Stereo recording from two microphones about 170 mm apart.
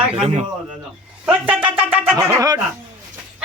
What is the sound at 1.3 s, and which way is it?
Speech, 5° right (ahead or behind).